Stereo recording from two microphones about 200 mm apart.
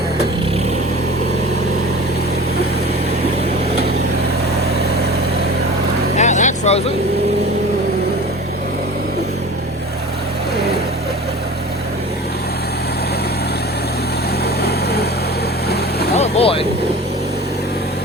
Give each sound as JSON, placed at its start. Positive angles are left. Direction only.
{"t": 6.1, "sound": "vehicle", "side_deg": 35}
{"t": 14.4, "sound": "vehicle", "side_deg": 50}
{"t": 16.1, "sound": "vehicle", "side_deg": 30}